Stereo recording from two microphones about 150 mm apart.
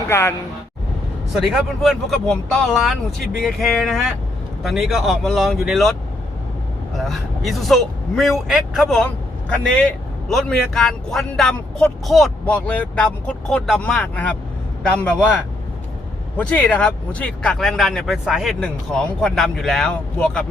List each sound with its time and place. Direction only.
0.1 s a man's voice: 15° left (ahead or behind)
1.3 s a man's voice: centre (ahead or behind)
6.9 s a man's voice: centre (ahead or behind)
16.4 s a man's voice: 10° left (ahead or behind)